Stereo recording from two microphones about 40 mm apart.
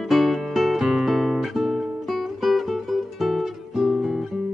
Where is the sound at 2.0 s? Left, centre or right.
Centre.